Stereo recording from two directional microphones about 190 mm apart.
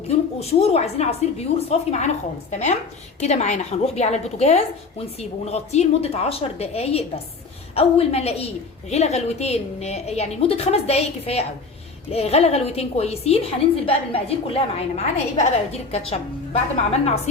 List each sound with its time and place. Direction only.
0.3 s a woman's voice: 35° left (ahead or behind)